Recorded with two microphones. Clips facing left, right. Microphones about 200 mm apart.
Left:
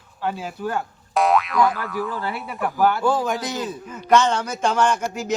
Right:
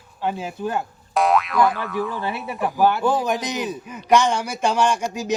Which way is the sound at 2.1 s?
20° right (ahead or behind).